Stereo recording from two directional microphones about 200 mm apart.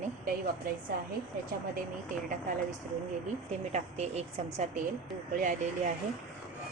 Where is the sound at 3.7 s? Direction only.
35° right (ahead or behind).